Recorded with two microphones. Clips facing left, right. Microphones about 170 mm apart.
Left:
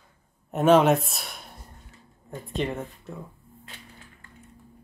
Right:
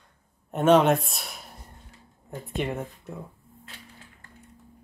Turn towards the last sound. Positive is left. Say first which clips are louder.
# right 1 dB
turn(degrees=-10)  # may be behind; listen again after turning